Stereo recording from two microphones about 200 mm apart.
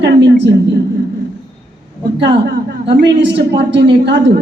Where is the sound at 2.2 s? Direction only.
55° right (ahead or behind).